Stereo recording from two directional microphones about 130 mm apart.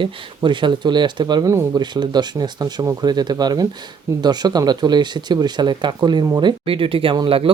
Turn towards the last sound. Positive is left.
turn(degrees=-40)  # may be behind; listen again after turning